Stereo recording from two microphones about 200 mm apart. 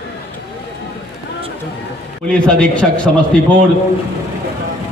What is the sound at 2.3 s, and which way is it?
Speech, 5° left (ahead or behind).